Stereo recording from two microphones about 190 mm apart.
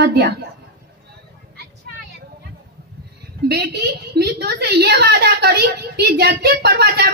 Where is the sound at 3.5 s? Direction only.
60° right (ahead or behind).